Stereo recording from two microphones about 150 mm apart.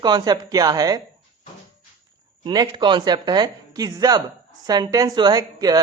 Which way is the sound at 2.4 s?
30° right (ahead or behind).